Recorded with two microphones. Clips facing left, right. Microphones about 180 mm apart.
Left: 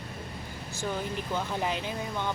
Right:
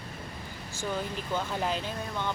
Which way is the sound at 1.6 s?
15° left (ahead or behind).